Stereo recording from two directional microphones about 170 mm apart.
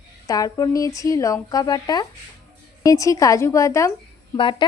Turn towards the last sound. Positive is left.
turn(degrees=30)  # may be behind; listen again after turning